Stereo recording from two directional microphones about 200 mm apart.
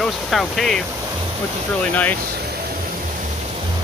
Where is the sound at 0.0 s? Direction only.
Centre (ahead or behind).